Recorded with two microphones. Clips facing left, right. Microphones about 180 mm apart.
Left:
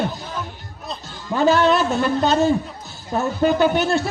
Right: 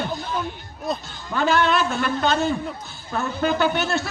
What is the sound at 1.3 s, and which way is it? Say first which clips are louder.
A man's voice: left 4 dB; 35° left (ahead or behind).